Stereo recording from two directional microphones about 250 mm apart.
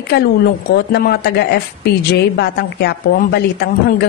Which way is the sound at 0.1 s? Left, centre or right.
Left.